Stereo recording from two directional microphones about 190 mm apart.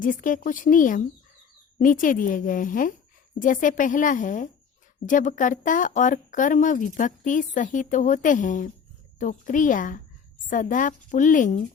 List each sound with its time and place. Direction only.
0.0 s speech: 45° left (ahead or behind)